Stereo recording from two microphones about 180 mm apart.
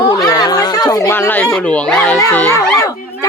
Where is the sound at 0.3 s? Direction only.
20° left (ahead or behind).